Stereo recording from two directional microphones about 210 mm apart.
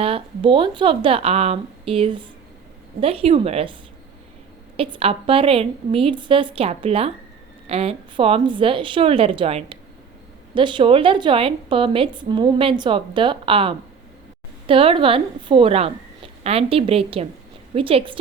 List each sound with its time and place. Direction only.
0.0 s a woman's voice: 25° right (ahead or behind)
4.8 s a woman's voice: 25° right (ahead or behind)